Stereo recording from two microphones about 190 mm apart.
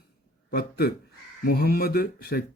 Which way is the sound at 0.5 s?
55° left (ahead or behind).